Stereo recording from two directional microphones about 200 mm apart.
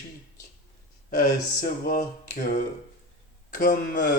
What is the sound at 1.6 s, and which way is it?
Speech, 45° left (ahead or behind).